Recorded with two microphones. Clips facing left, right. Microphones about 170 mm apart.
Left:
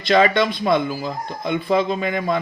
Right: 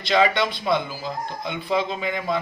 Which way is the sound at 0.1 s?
55° left (ahead or behind).